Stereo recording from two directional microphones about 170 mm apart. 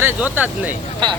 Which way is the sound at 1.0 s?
25° right (ahead or behind).